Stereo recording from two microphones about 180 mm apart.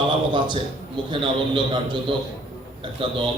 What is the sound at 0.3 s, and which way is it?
A man's voice, 25° right (ahead or behind).